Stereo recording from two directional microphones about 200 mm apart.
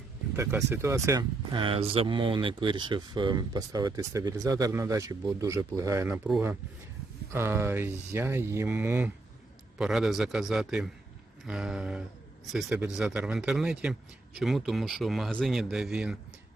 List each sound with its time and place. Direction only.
0.3 s speech: 10° right (ahead or behind)
7.3 s speech: 10° right (ahead or behind)